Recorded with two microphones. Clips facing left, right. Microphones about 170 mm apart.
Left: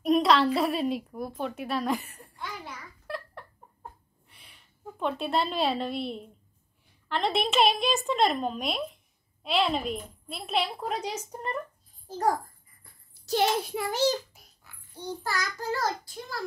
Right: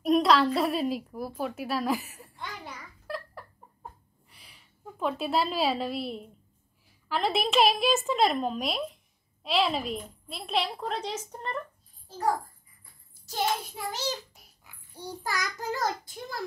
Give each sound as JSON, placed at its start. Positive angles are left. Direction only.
{"t": 0.0, "sound": "a sound", "side_deg": 0}
{"t": 0.6, "sound": "a woman's voice", "side_deg": 0}
{"t": 3.1, "sound": "laughter", "side_deg": 0}
{"t": 7.1, "sound": "a woman's voice", "side_deg": 0}
{"t": 13.2, "sound": "a child's voice", "side_deg": 75}
{"t": 14.6, "sound": "a child's voice", "side_deg": -15}